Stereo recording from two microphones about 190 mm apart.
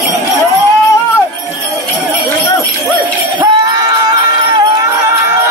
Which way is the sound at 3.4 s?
20° right (ahead or behind).